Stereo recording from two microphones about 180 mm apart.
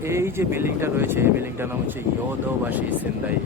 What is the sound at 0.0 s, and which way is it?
Speech, 15° right (ahead or behind).